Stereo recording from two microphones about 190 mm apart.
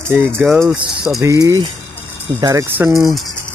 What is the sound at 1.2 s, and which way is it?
Speech, 15° right (ahead or behind).